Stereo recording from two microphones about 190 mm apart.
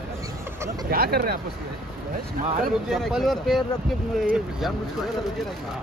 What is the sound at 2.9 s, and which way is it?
Speech, centre (ahead or behind).